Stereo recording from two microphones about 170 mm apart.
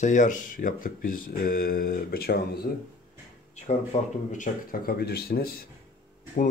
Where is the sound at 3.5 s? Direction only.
45° left (ahead or behind); by 5.6 s 60° left (ahead or behind).